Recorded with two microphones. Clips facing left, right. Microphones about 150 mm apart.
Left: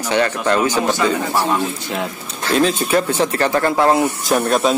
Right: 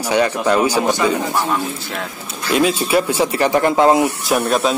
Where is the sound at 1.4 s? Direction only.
15° left (ahead or behind).